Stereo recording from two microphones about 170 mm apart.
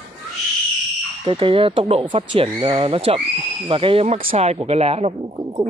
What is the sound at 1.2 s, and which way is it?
Speech, 30° right (ahead or behind).